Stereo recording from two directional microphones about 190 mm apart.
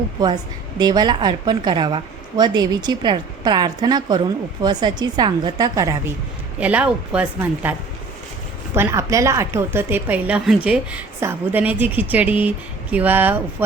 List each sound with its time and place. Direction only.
0.8 s a woman's voice: 20° right (ahead or behind)